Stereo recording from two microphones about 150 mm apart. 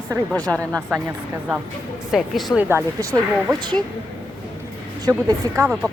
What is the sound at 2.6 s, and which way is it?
Speech, 15° right (ahead or behind).